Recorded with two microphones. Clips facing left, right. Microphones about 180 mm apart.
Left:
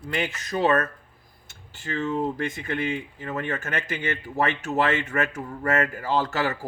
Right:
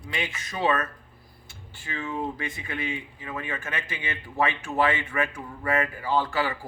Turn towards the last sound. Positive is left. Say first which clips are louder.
# left 1 dB
turn(degrees=45)  # may be behind; listen again after turning